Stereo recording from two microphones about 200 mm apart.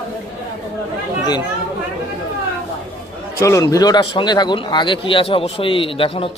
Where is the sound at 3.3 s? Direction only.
15° left (ahead or behind).